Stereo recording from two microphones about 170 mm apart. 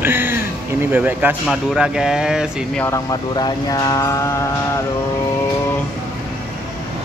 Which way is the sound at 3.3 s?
25° left (ahead or behind).